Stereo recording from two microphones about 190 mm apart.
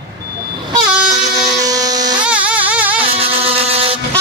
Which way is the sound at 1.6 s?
20° right (ahead or behind).